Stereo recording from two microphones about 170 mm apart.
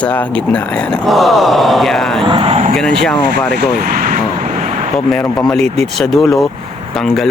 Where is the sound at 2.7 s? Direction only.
Centre (ahead or behind).